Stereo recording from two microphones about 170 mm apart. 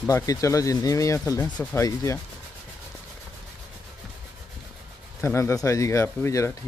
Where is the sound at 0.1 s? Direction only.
15° left (ahead or behind).